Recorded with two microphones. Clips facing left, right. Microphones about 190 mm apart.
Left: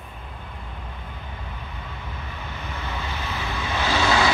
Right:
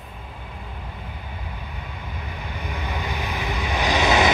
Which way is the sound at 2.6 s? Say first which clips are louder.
Right 3 dB; 15° right (ahead or behind).